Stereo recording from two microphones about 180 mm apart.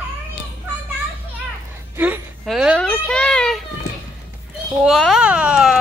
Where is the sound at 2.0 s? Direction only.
10° right (ahead or behind).